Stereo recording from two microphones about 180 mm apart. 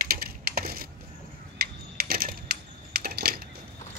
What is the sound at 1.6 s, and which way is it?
Typing, 55° right (ahead or behind).